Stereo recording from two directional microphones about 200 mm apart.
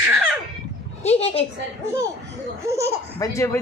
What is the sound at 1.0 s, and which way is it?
Speech, 30° left (ahead or behind).